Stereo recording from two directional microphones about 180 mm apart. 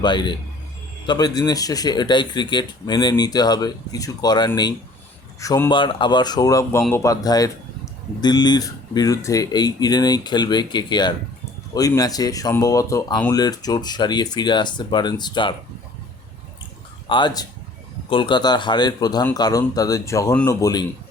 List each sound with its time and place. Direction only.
0.0 s speech: 25° left (ahead or behind)
17.1 s speech: 25° left (ahead or behind)